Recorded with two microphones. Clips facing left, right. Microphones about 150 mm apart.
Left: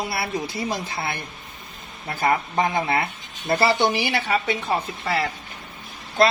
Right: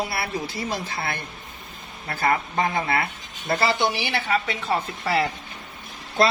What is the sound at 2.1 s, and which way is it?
Speech, 20° left (ahead or behind).